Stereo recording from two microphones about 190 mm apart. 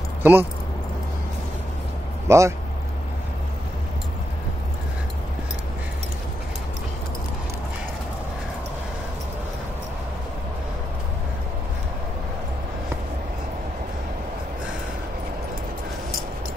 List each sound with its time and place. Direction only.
0.2 s speech: 10° right (ahead or behind)
2.2 s speech: 15° right (ahead or behind)